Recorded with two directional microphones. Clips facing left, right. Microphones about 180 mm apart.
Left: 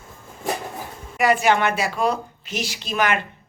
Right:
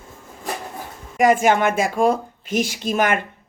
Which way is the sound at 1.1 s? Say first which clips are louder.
Right 3 dB; 45° right (ahead or behind).